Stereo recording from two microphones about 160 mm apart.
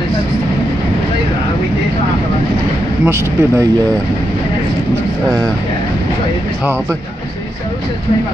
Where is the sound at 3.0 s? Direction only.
15° right (ahead or behind).